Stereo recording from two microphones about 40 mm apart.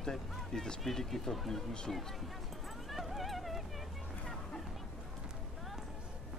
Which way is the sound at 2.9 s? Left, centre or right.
Centre.